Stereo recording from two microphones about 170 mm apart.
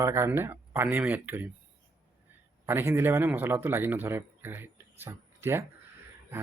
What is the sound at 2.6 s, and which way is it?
A man's voice, 15° right (ahead or behind).